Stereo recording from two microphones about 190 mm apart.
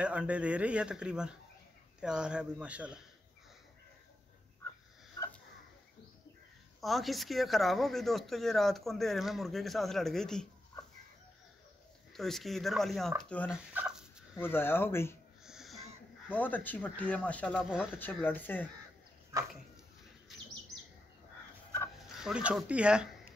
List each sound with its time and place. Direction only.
0.0 s speech: 5° right (ahead or behind)
6.8 s speech: centre (ahead or behind)
12.1 s speech: centre (ahead or behind)
13.5 s fowl: 5° right (ahead or behind)
14.4 s speech: 10° left (ahead or behind)
15.4 s a sound: centre (ahead or behind)
16.3 s speech: 10° left (ahead or behind)
19.3 s dog: 20° right (ahead or behind)
22.1 s speech: 5° right (ahead or behind)